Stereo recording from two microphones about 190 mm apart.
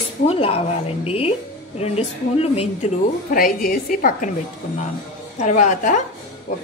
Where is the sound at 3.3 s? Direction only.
45° left (ahead or behind).